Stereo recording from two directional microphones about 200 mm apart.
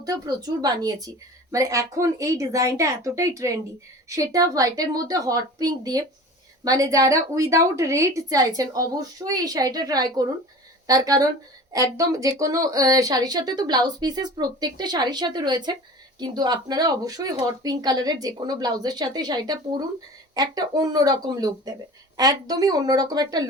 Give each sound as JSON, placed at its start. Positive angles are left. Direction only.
{"t": 0.0, "sound": "a woman's voice", "side_deg": -20}